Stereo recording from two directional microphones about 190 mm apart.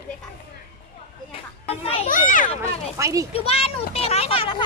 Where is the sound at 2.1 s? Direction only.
45° left (ahead or behind).